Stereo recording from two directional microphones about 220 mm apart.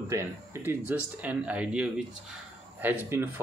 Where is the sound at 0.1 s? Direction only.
10° right (ahead or behind).